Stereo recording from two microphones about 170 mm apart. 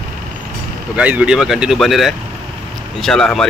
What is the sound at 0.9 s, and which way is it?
Speech, 5° right (ahead or behind).